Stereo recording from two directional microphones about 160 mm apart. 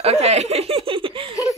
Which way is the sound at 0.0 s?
40° right (ahead or behind).